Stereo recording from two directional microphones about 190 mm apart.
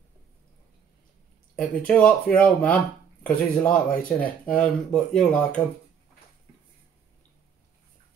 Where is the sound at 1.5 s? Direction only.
5° left (ahead or behind).